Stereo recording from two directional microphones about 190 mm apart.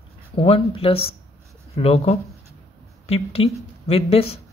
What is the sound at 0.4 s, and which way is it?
Speech, 30° left (ahead or behind).